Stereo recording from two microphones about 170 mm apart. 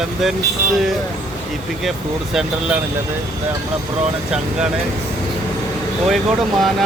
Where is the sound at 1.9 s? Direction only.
Centre (ahead or behind).